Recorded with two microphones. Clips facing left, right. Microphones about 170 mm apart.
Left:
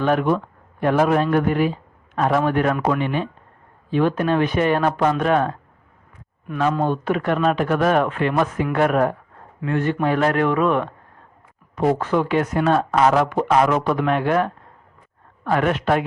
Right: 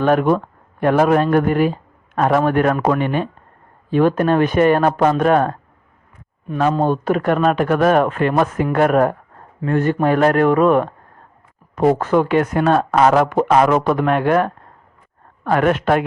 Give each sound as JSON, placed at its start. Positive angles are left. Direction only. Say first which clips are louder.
{"t": 0.0, "sound": "speech", "louder": "right 4 dB", "side_deg": -50}
{"t": 6.6, "sound": "speech", "louder": "right 3 dB", "side_deg": -40}